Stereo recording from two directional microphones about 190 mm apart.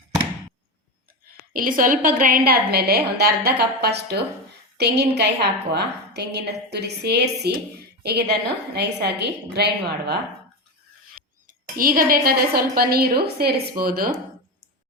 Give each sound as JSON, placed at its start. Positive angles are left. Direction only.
{"t": 1.5, "sound": "a woman's voice", "side_deg": -45}
{"t": 11.1, "sound": "a woman's voice", "side_deg": -50}